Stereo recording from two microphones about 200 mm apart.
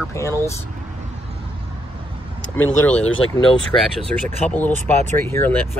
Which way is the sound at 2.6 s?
5° left (ahead or behind).